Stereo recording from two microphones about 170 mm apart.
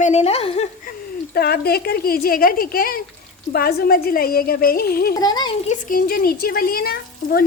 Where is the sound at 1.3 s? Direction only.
70° left (ahead or behind).